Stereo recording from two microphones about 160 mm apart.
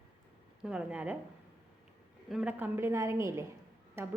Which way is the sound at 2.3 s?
10° right (ahead or behind).